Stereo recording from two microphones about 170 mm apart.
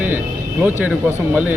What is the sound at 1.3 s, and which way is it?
Speech, 10° right (ahead or behind).